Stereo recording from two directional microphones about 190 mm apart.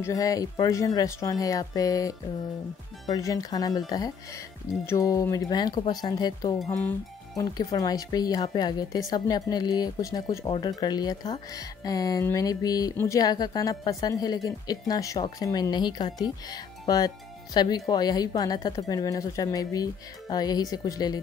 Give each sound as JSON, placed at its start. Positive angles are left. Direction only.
{"t": 0.0, "sound": "speech", "side_deg": 15}
{"t": 6.6, "sound": "speech", "side_deg": 5}
{"t": 7.3, "sound": "speech", "side_deg": 20}